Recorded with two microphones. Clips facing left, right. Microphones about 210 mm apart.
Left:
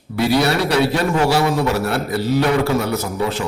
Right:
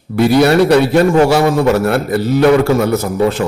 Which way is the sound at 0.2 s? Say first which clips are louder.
Right 7 dB; 55° right (ahead or behind).